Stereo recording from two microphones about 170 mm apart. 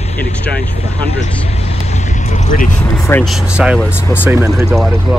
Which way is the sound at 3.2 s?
5° right (ahead or behind).